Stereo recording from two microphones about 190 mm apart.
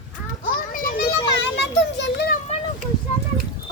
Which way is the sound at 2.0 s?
60° left (ahead or behind).